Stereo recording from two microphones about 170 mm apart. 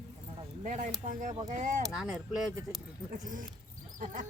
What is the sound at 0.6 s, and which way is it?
Speech, 50° right (ahead or behind).